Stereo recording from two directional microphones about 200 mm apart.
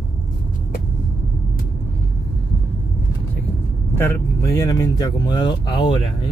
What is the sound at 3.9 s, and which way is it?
Speech, 15° left (ahead or behind).